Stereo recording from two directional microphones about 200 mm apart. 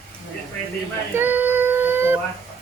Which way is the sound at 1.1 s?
10° right (ahead or behind).